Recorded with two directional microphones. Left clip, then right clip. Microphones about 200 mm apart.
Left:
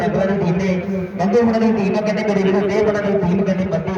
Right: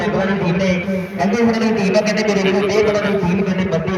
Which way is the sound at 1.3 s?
60° left (ahead or behind).